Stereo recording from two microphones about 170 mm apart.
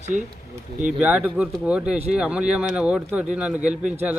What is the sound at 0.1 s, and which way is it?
Speech, 50° right (ahead or behind).